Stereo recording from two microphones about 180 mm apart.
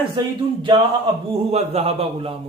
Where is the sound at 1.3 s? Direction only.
35° right (ahead or behind).